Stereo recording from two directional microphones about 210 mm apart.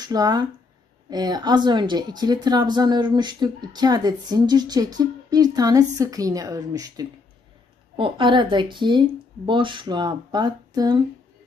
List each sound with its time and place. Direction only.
0.0 s speech: 20° right (ahead or behind)